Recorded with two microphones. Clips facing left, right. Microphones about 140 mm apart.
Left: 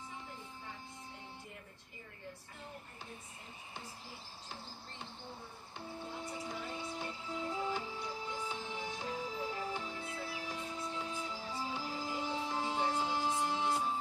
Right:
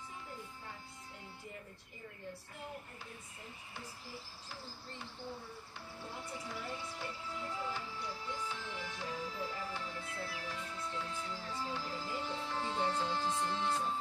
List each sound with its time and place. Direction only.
3.7 s speech: 20° left (ahead or behind)
5.8 s music: 20° left (ahead or behind)